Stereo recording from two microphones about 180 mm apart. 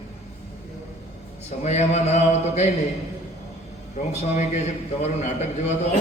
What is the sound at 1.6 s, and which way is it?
Speech, 40° left (ahead or behind).